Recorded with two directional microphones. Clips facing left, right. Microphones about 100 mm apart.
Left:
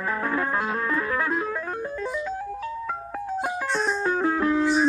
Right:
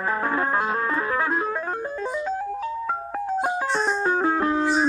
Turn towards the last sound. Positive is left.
turn(degrees=-30)  # may be behind; listen again after turning